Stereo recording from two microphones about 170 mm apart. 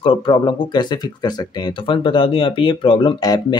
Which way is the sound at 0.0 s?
30° left (ahead or behind).